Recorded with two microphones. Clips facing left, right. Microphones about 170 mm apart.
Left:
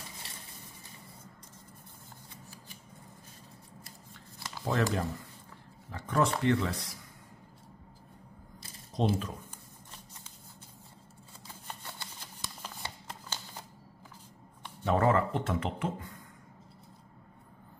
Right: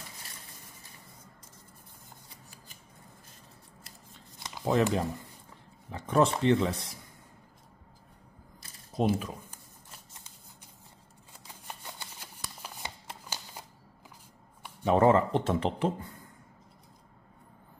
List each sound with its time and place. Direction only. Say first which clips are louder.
4.4 s a sound: right 4 dB; 20° right (ahead or behind)
5.9 s speech: right 4 dB; 20° right (ahead or behind)
8.9 s speech: right 2 dB; 10° right (ahead or behind)
11.4 s shuffling cards: right 1 dB; 10° right (ahead or behind)
14.6 s speech: right 4 dB; 15° right (ahead or behind); by 16.2 s 30° right (ahead or behind)